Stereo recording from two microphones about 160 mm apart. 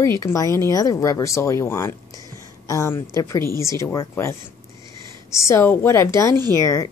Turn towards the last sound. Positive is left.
turn(degrees=20)  # may be behind; listen again after turning